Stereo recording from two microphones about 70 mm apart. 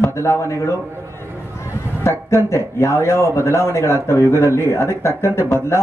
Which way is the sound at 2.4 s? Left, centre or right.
Left.